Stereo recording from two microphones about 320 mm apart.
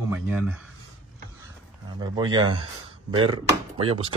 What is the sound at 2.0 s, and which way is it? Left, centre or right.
Speech, centre.